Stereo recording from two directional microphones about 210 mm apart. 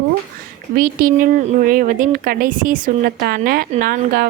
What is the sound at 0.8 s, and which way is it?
A woman's voice, 40° right (ahead or behind).